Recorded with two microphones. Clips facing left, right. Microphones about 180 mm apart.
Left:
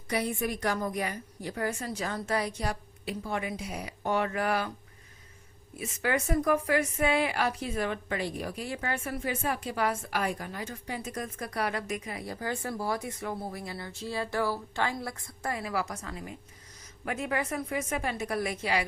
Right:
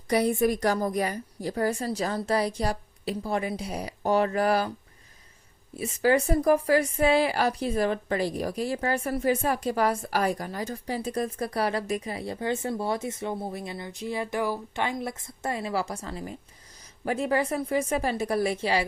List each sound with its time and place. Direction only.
0.1 s a woman's voice: 40° right (ahead or behind)
5.7 s a woman's voice: 30° right (ahead or behind)